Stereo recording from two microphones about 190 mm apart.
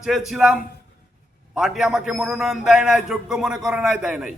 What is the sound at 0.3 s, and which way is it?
A man's voice, centre (ahead or behind).